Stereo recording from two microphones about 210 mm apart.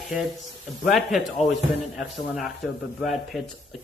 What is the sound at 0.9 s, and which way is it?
Speech, centre (ahead or behind).